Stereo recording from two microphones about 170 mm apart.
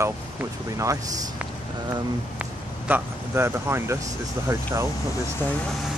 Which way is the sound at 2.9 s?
15° right (ahead or behind).